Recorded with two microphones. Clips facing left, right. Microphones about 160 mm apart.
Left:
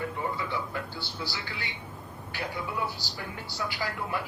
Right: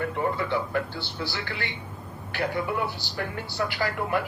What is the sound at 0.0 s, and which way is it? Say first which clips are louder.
A man's voice: right 5 dB; 60° right (ahead or behind).